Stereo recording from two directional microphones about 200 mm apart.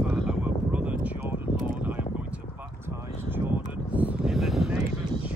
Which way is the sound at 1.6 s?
5° right (ahead or behind).